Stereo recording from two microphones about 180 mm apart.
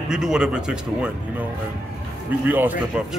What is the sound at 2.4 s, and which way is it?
Speech, 10° right (ahead or behind).